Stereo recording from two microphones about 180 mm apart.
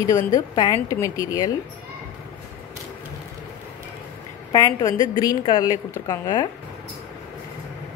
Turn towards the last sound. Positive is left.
turn(degrees=20)  # may be behind; listen again after turning